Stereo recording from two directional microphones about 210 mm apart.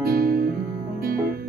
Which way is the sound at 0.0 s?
45° right (ahead or behind).